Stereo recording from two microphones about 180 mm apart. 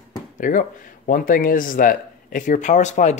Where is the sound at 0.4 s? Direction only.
45° left (ahead or behind).